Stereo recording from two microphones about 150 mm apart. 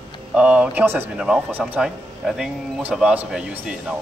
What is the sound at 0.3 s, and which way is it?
Speech, 10° right (ahead or behind).